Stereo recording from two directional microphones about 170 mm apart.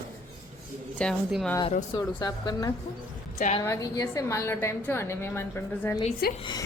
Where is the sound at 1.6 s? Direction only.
35° left (ahead or behind).